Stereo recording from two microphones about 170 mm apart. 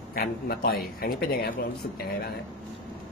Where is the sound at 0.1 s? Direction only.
60° left (ahead or behind).